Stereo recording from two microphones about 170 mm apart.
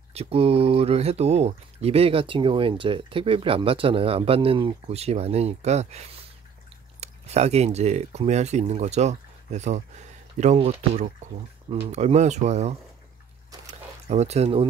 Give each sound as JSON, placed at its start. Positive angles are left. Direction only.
{"t": 0.1, "sound": "speech", "side_deg": -35}
{"t": 14.0, "sound": "speech", "side_deg": -40}